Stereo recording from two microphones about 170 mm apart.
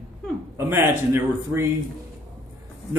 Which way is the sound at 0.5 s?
15° right (ahead or behind).